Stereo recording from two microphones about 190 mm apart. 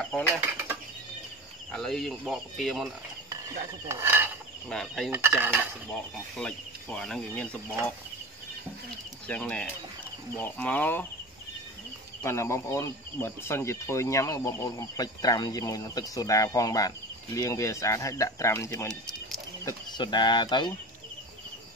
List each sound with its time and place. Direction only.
0.0 s speech: 5° left (ahead or behind)
0.4 s bird flight: 10° right (ahead or behind)
1.7 s speech: centre (ahead or behind)
3.9 s dishes: 10° right (ahead or behind)
4.6 s speech: centre (ahead or behind)
5.1 s dishes: 10° right (ahead or behind)
5.9 s speech: 5° left (ahead or behind)
9.3 s speech: 5° left (ahead or behind)
12.2 s speech: 15° left (ahead or behind)